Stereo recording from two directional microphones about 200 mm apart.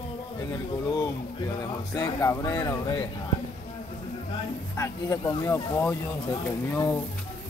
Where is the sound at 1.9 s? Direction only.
15° left (ahead or behind).